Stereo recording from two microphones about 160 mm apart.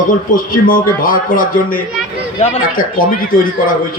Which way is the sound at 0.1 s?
60° left (ahead or behind).